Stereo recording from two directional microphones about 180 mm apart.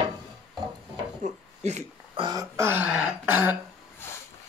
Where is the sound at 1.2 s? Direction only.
40° right (ahead or behind).